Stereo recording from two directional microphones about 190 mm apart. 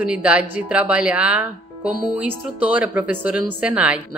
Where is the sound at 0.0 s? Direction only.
5° right (ahead or behind).